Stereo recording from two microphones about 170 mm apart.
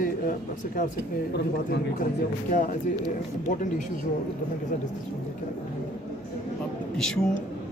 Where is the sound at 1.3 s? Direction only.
80° left.